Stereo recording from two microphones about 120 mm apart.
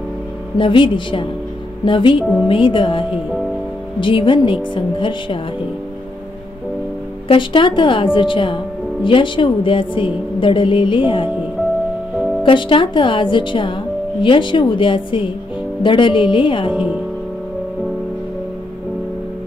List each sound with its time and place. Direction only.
0.6 s a woman's voice: 45° left (ahead or behind)
7.2 s a woman's voice: 45° left (ahead or behind)
12.4 s a woman's voice: 45° left (ahead or behind)
16.7 s speech: 5° right (ahead or behind)